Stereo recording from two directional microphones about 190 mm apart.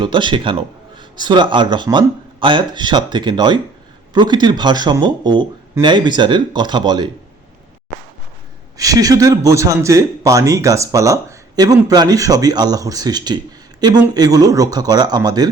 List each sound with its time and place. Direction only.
0.0 s speech: 25° right (ahead or behind)
8.8 s a man's voice: 20° right (ahead or behind)